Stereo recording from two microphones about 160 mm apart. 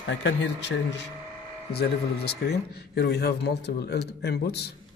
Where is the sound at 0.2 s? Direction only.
90° left.